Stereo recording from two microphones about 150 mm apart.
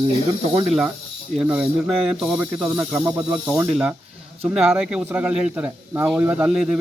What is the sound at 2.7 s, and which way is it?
Speech, 20° right (ahead or behind).